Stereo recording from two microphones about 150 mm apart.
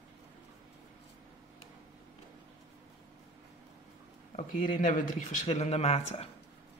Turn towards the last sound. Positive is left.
turn(degrees=40)  # may be behind; listen again after turning